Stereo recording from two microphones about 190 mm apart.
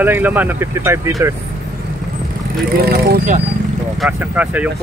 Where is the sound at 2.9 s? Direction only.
55° right (ahead or behind).